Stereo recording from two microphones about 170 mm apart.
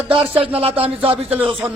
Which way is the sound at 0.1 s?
30° right (ahead or behind).